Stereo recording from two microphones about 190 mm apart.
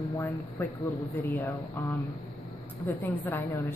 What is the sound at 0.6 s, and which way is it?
Speech, 15° left (ahead or behind).